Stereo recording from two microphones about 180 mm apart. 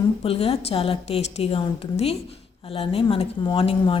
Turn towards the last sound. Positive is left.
turn(degrees=30)  # may be behind; listen again after turning